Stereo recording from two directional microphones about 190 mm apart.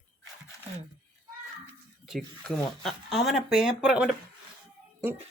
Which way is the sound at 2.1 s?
Centre (ahead or behind).